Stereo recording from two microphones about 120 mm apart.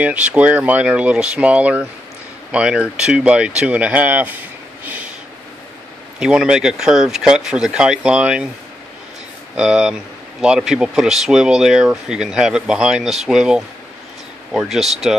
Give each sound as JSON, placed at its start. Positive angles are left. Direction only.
{"t": 0.0, "sound": "speech", "side_deg": -10}
{"t": 6.1, "sound": "speech", "side_deg": -10}
{"t": 9.6, "sound": "speech", "side_deg": -5}